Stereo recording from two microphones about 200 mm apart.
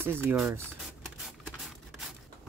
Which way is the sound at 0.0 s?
10° right (ahead or behind).